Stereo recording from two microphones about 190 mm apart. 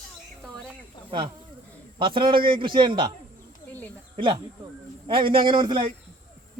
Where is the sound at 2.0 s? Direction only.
25° right (ahead or behind).